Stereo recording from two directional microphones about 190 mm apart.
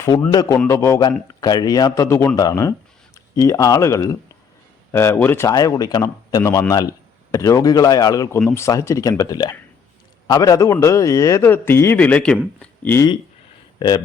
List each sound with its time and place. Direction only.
0.0 s speech: 15° left (ahead or behind)
13.7 s speech: 20° left (ahead or behind)